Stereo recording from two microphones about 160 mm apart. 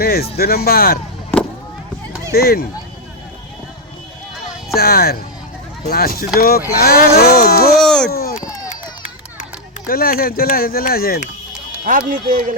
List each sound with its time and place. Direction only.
0.0 s speech: 75° left (ahead or behind)
2.3 s speech: 75° left (ahead or behind)
4.7 s speech: 75° left (ahead or behind)
7.8 s speech: 5° left (ahead or behind)
8.1 s a sound: 70° left (ahead or behind)
9.4 s speech: 65° left (ahead or behind)
11.9 s speech: 55° right (ahead or behind)